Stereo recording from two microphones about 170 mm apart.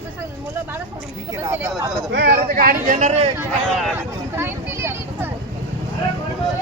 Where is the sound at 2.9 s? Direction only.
45° right (ahead or behind).